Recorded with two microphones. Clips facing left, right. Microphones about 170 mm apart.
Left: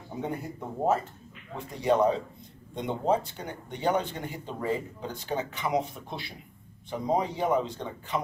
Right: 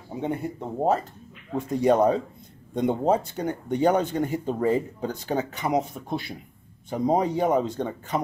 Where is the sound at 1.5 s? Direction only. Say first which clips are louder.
Right 5 dB; 45° right (ahead or behind).